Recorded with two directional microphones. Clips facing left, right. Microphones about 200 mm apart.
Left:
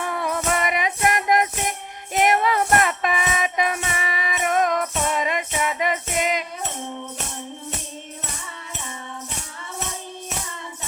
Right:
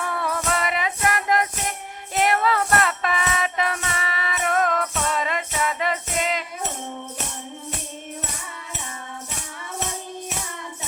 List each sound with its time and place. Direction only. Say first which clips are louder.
0.0 s music: left 1 dB; 15° left (ahead or behind)